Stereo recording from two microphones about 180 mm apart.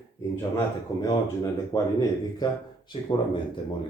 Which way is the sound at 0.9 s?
20° left (ahead or behind).